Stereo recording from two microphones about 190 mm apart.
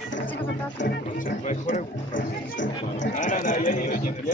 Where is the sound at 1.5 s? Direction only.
40° left (ahead or behind).